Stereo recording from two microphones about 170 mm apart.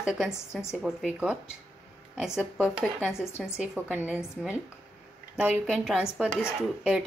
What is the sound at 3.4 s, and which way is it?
Speech, 5° right (ahead or behind).